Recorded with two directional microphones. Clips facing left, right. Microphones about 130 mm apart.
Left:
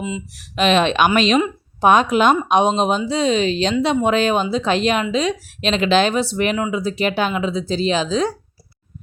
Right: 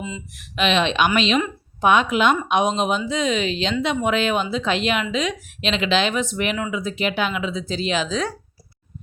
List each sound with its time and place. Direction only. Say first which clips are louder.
0.3 s speech: left 4 dB; 40° left (ahead or behind)